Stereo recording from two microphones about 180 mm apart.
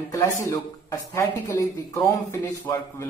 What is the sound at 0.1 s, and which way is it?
A man's voice, 15° left (ahead or behind).